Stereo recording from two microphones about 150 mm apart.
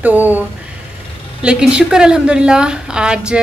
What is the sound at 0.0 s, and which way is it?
A woman's voice, 10° right (ahead or behind).